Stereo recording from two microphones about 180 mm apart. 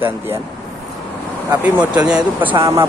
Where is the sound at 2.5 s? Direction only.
20° right (ahead or behind).